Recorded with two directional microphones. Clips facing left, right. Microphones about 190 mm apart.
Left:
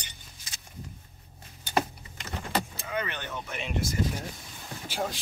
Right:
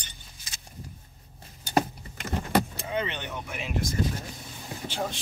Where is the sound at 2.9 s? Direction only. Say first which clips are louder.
Left 1 dB; 25° right (ahead or behind); by 3.8 s 5° right (ahead or behind).